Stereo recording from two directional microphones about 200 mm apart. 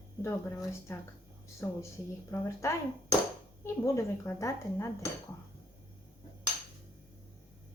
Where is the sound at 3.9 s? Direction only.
15° left (ahead or behind).